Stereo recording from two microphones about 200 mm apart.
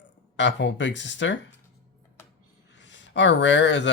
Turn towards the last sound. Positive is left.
turn(degrees=60)  # may be behind; listen again after turning